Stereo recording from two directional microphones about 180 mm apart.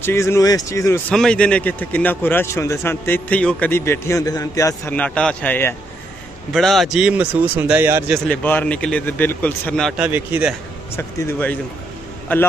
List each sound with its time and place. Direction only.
0.0 s a man's voice: 15° left (ahead or behind)
1.1 s a man's voice: 5° left (ahead or behind)
6.5 s speech: centre (ahead or behind)
8.3 s a man's voice: 10° left (ahead or behind)
9.9 s a man's voice: 10° right (ahead or behind)
11.0 s a man's voice: 10° left (ahead or behind)